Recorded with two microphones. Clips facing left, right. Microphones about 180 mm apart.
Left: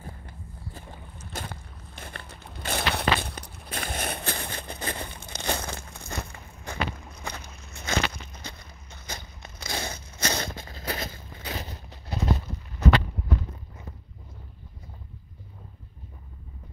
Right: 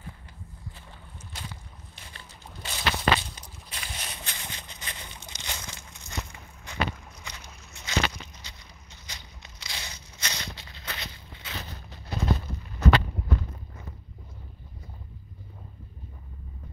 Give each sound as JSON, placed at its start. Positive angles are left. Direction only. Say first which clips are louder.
{"t": 0.0, "sound": "music", "louder": "left 3 dB", "side_deg": 45}
{"t": 1.3, "sound": "walk", "louder": "left 6 dB", "side_deg": 55}
{"t": 11.5, "sound": "a sound", "louder": "left 1 dB", "side_deg": 35}